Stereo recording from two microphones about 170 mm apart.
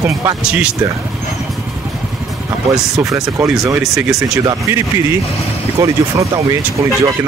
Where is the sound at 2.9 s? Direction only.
20° right (ahead or behind).